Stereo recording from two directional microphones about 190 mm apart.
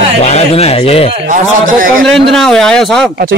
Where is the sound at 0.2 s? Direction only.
35° left (ahead or behind).